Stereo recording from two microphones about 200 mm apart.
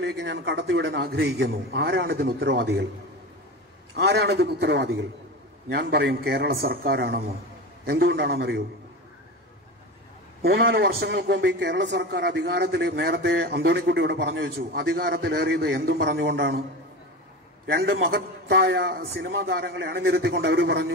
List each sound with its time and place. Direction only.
0.0 s a man's voice: 55° right (ahead or behind)
3.9 s a man's voice: 55° right (ahead or behind)
10.4 s a man's voice: 50° right (ahead or behind)
17.6 s a man's voice: 50° right (ahead or behind)